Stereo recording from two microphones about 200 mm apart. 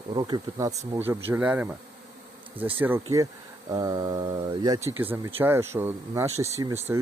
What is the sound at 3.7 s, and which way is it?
Speech, 20° right (ahead or behind).